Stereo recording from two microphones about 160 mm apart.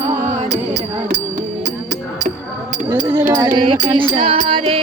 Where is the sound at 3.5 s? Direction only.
30° right (ahead or behind).